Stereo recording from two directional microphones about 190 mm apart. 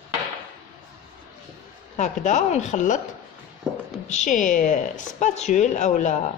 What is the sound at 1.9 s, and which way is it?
Speech, 40° left (ahead or behind).